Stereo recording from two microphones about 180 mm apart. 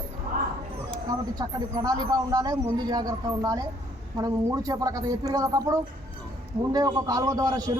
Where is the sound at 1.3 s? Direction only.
20° right (ahead or behind).